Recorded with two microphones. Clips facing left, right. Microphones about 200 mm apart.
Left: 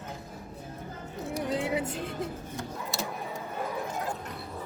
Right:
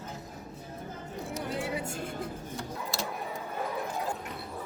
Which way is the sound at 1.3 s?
20° left (ahead or behind).